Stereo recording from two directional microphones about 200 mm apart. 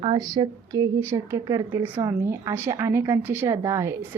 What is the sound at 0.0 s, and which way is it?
Speech, 20° right (ahead or behind).